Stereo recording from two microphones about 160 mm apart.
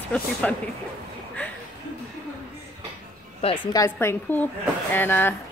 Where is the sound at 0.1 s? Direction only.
10° left (ahead or behind).